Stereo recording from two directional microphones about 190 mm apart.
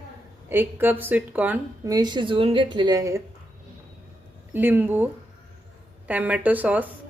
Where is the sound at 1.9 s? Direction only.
20° right (ahead or behind).